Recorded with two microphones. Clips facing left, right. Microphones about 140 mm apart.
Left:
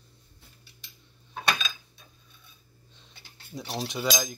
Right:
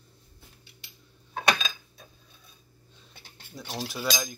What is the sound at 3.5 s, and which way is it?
Cutlery, 20° left (ahead or behind).